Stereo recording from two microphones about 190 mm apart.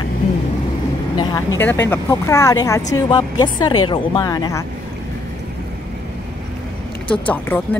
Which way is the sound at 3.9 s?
20° left (ahead or behind).